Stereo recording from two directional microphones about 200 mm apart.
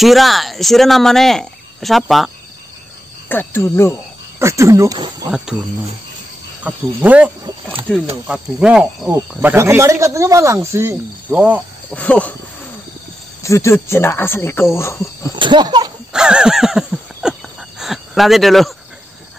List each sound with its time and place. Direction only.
0.0 s speech: centre (ahead or behind)
3.3 s speech: 10° left (ahead or behind)
4.4 s speech: 15° right (ahead or behind)
5.3 s speech: 5° right (ahead or behind)
6.6 s speech: 5° right (ahead or behind)
8.3 s speech: 5° right (ahead or behind)
11.9 s speech: 5° left (ahead or behind)
13.4 s speech: 15° left (ahead or behind)
15.3 s a sound: 25° right (ahead or behind)
16.1 s a sound: 5° right (ahead or behind)